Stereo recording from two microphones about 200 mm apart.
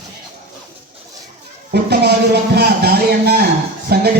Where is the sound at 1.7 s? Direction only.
55° right (ahead or behind).